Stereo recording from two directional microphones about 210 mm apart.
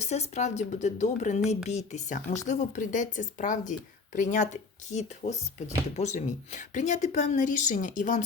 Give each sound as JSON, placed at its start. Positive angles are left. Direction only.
{"t": 0.0, "sound": "speech", "side_deg": 30}